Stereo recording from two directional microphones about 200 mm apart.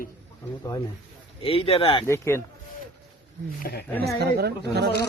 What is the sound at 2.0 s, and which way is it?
Speech, 15° left (ahead or behind).